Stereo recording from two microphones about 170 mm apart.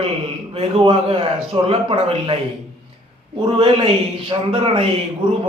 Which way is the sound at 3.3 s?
35° right (ahead or behind).